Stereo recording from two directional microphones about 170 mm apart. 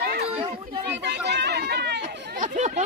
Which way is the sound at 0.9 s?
90° right.